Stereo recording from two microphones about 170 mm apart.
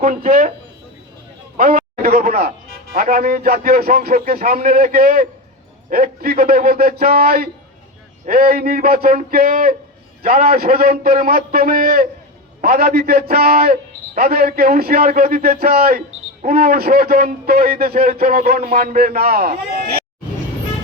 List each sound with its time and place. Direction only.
0.0 s a man's voice: 55° right (ahead or behind)
1.5 s a man's voice: 55° right (ahead or behind)